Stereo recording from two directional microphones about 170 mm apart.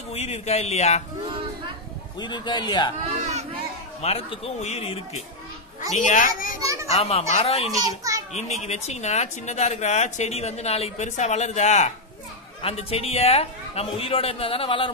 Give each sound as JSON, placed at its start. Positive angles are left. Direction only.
{"t": 0.1, "sound": "speech", "side_deg": 40}
{"t": 2.1, "sound": "a man's voice", "side_deg": 25}
{"t": 4.0, "sound": "speech", "side_deg": 40}
{"t": 5.9, "sound": "a child's voice", "side_deg": 50}
{"t": 6.6, "sound": "children playing", "side_deg": -20}
{"t": 6.9, "sound": "speech", "side_deg": 35}
{"t": 7.7, "sound": "a child's voice", "side_deg": -20}
{"t": 8.3, "sound": "a child's voice", "side_deg": 40}